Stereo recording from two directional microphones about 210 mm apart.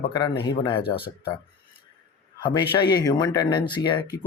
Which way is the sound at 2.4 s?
20° left (ahead or behind).